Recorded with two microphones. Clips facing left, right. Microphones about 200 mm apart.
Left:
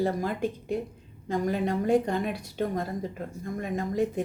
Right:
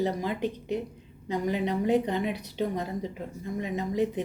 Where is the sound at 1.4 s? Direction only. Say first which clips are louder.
Even; 50° left (ahead or behind).